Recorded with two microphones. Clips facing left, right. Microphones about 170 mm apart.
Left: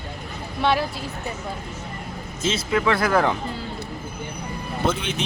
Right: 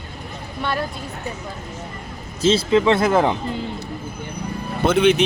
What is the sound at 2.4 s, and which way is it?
Speech, 30° right (ahead or behind).